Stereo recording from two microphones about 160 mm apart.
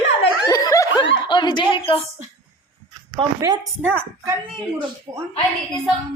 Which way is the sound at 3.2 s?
30° right (ahead or behind).